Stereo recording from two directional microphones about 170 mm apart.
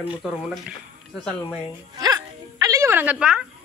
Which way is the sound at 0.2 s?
Centre (ahead or behind).